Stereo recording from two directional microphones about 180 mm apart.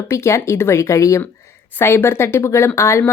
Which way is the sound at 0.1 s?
15° left (ahead or behind).